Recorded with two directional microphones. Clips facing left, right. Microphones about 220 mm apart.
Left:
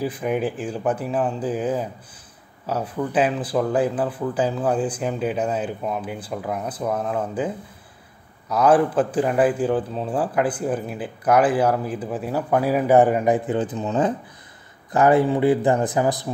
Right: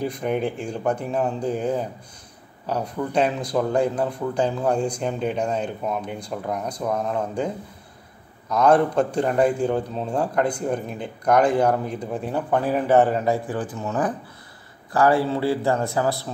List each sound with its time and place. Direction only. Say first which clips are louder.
0.0 s a man's voice: left 1 dB; 5° left (ahead or behind)